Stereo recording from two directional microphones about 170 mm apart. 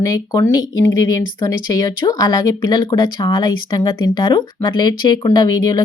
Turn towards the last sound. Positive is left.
turn(degrees=25)  # may be behind; listen again after turning